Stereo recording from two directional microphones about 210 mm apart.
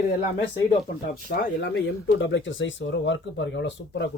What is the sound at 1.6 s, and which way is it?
Speech, 55° left (ahead or behind).